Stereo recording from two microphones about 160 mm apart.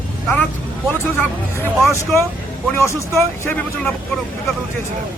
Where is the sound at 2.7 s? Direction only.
15° left (ahead or behind).